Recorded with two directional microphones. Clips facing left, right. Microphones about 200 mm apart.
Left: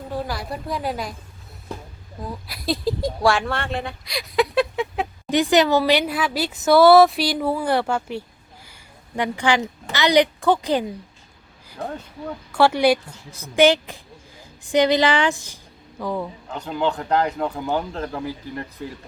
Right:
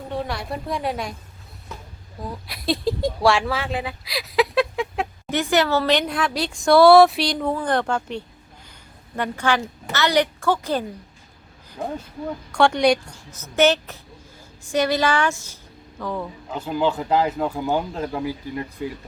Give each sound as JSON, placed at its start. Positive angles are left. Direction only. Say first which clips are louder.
{"t": 0.1, "sound": "a woman's voice", "louder": "even", "side_deg": 0}
{"t": 2.2, "sound": "speech", "louder": "right 1 dB", "side_deg": 0}
{"t": 5.3, "sound": "speech", "louder": "left 3 dB", "side_deg": 15}
{"t": 8.6, "sound": "a sound", "louder": "right 1 dB", "side_deg": 10}
{"t": 9.9, "sound": "speech", "louder": "left 3 dB", "side_deg": 15}
{"t": 12.5, "sound": "speech", "louder": "left 1 dB", "side_deg": 5}
{"t": 16.5, "sound": "speech", "louder": "right 2 dB", "side_deg": -5}